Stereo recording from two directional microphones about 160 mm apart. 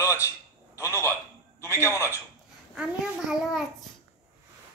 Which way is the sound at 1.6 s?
15° left (ahead or behind).